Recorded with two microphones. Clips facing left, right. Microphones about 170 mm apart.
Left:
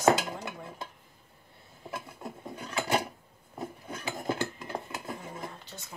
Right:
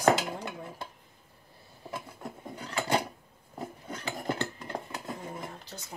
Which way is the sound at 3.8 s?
10° left (ahead or behind).